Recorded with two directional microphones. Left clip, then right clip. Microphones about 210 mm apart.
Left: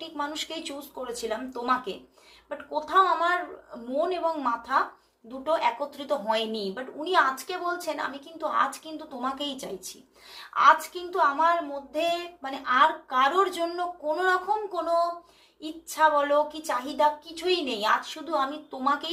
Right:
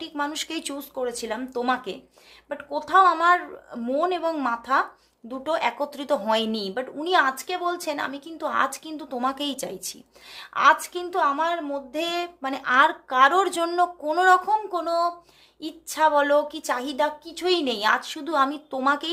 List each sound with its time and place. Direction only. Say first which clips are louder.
0.0 s a woman's voice: right 3 dB; 50° right (ahead or behind)
15.9 s a woman's voice: right 3 dB; 50° right (ahead or behind)